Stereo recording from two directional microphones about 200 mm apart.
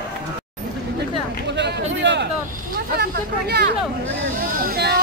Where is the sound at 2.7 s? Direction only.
50° right (ahead or behind).